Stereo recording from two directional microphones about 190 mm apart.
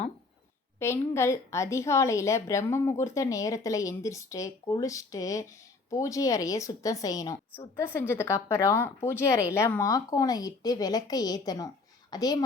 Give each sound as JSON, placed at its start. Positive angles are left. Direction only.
{"t": 0.8, "sound": "a woman's voice", "side_deg": 15}